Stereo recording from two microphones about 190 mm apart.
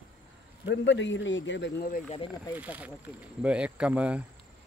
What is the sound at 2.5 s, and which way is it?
Speech, 10° right (ahead or behind).